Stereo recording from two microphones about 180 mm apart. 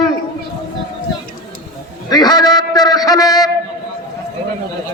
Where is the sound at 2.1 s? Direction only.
20° left (ahead or behind).